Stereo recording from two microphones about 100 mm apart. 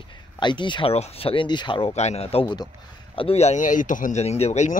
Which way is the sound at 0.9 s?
80° left.